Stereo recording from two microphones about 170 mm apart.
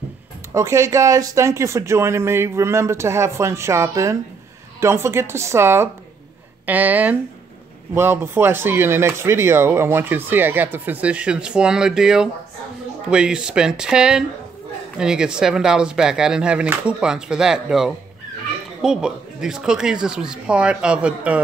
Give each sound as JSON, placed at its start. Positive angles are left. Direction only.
{"t": 0.5, "sound": "speech", "side_deg": -15}